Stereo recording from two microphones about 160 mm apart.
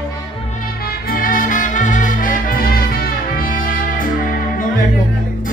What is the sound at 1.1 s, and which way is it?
Music, 60° left (ahead or behind).